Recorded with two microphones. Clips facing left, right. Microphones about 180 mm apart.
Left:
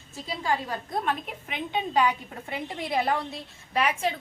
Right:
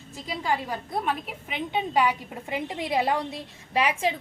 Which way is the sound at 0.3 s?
15° right (ahead or behind).